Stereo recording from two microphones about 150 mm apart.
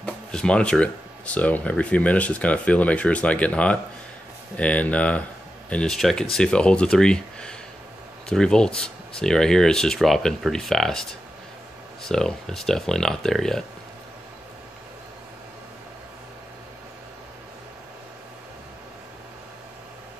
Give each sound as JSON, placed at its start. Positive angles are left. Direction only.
{"t": 0.0, "sound": "speech", "side_deg": 5}